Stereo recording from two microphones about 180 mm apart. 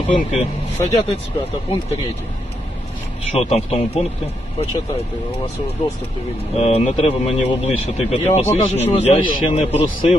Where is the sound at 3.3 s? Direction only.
35° left (ahead or behind).